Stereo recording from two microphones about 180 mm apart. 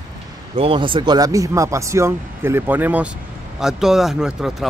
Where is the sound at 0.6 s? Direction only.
30° right (ahead or behind).